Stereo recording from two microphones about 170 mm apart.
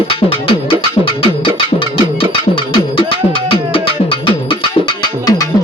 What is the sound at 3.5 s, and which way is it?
Music, 30° left (ahead or behind).